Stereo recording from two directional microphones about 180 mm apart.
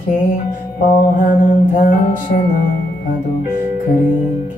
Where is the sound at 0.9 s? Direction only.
55° left (ahead or behind).